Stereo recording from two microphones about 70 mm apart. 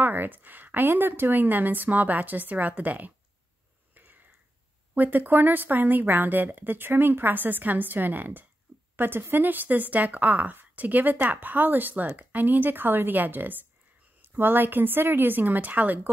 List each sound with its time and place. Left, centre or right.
0.0 s speech: right
3.9 s a sound: right
4.9 s speech: right